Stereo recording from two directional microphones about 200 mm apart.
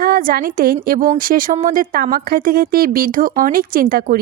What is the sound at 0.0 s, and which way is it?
A woman's voice, 45° right (ahead or behind).